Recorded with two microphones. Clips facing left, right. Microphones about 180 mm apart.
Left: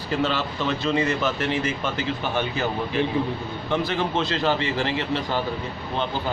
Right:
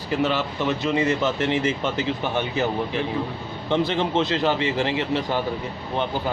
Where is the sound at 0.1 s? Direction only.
15° right (ahead or behind).